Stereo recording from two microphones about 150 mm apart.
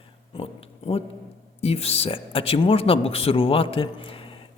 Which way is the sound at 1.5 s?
40° left (ahead or behind).